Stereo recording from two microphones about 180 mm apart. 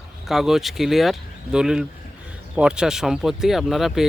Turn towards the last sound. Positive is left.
turn(degrees=0)  # may be behind; listen again after turning